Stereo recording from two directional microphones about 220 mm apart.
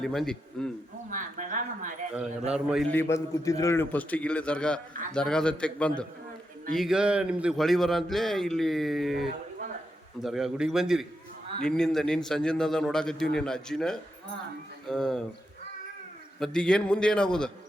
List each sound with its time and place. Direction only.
0.0 s a man's voice: centre (ahead or behind)
1.1 s speech: 35° right (ahead or behind)
2.5 s a man's voice: 5° right (ahead or behind)
2.9 s a man's voice: 10° left (ahead or behind)
16.4 s a man's voice: 5° left (ahead or behind)